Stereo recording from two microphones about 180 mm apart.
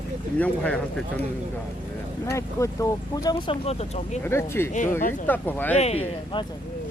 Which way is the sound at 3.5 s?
35° left (ahead or behind).